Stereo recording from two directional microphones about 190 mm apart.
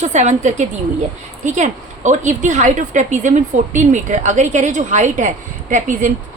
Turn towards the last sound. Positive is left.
turn(degrees=-40)  # may be behind; listen again after turning